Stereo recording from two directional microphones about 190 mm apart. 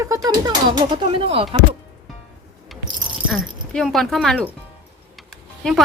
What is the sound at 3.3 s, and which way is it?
Speech, centre (ahead or behind).